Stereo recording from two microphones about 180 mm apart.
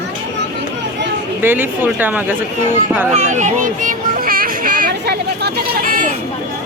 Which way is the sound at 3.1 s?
40° right (ahead or behind).